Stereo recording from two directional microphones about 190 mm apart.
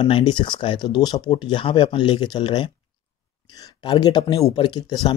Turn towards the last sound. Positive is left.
turn(degrees=20)  # may be behind; listen again after turning